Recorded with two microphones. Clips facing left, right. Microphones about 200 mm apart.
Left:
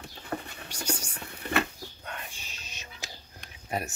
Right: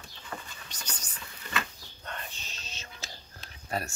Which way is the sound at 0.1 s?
60° left (ahead or behind).